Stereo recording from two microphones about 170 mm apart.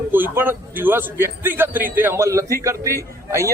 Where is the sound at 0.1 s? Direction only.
10° right (ahead or behind).